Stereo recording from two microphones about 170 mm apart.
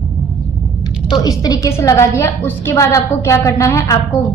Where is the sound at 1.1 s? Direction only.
20° left (ahead or behind).